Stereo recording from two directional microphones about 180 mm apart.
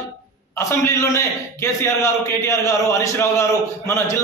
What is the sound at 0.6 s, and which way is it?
A man's voice, 15° left (ahead or behind).